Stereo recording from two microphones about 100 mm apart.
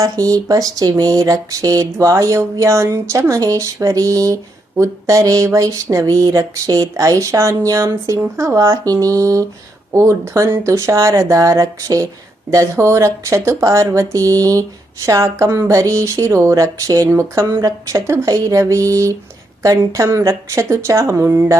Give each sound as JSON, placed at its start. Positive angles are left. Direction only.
{"t": 0.0, "sound": "speech", "side_deg": -35}